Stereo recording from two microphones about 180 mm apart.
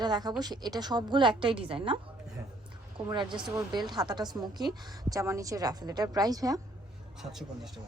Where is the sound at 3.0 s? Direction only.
25° right (ahead or behind).